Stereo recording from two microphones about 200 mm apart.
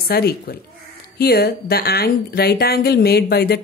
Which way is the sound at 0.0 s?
50° left (ahead or behind).